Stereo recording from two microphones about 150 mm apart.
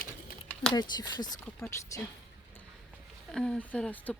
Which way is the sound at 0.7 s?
25° left (ahead or behind).